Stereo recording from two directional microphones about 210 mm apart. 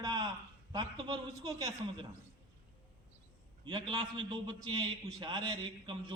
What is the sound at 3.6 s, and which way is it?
A man's voice, 20° right (ahead or behind).